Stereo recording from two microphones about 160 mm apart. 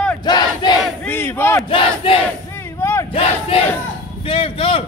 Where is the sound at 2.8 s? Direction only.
15° left (ahead or behind).